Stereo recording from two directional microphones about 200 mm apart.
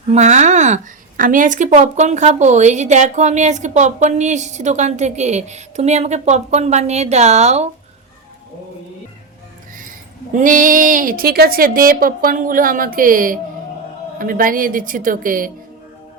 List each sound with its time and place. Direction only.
0.1 s a woman's voice: 35° right (ahead or behind)
10.3 s a woman's voice: 40° right (ahead or behind)